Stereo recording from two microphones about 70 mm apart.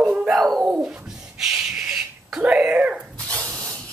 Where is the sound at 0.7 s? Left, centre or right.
Centre.